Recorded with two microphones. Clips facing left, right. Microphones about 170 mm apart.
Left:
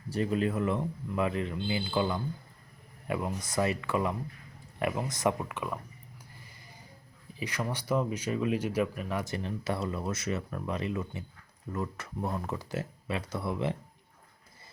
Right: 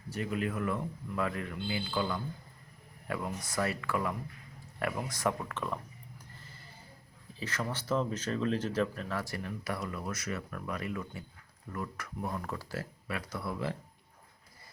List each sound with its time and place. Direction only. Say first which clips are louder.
0.1 s speech: left 5 dB; 30° left (ahead or behind); by 5.8 s 10° left (ahead or behind)
6.4 s a sound: right 1 dB; 15° left (ahead or behind)
7.3 s speech: left 2 dB; 15° left (ahead or behind)